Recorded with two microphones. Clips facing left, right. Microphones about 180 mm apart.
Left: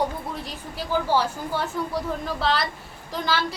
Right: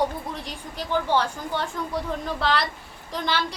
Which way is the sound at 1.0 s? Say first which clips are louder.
Left 1 dB; 5° left (ahead or behind).